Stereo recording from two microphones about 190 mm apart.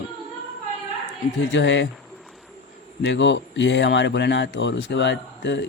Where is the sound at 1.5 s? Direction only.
70° left (ahead or behind).